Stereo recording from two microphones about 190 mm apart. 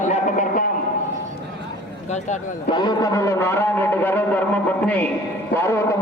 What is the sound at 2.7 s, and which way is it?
A man's voice, 20° left (ahead or behind).